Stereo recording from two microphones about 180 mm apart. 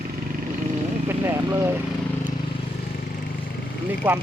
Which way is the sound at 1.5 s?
15° right (ahead or behind).